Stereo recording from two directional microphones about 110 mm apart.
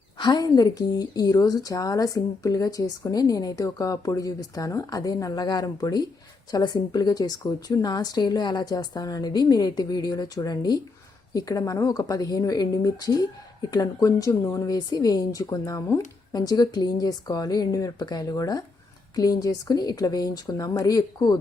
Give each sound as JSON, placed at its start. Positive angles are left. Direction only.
{"t": 0.2, "sound": "a woman's voice", "side_deg": 40}